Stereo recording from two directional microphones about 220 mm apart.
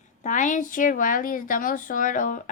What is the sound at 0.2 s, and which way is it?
A woman's voice, 35° left (ahead or behind).